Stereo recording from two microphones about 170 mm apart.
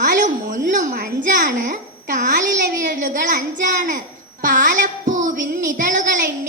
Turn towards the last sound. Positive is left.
turn(degrees=-50)  # may be behind; listen again after turning